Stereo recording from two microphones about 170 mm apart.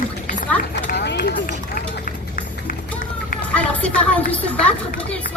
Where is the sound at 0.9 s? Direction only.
90° left.